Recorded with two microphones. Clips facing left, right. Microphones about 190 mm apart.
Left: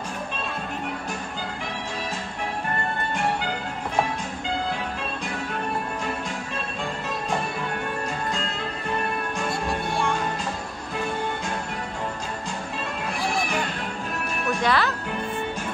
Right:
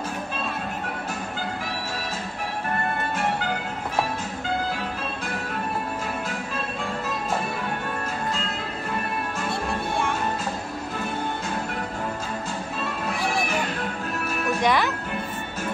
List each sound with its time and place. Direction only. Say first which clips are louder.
14.6 s music: right 1 dB; 15° right (ahead or behind)